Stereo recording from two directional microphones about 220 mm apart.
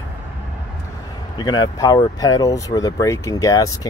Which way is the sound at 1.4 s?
20° left (ahead or behind).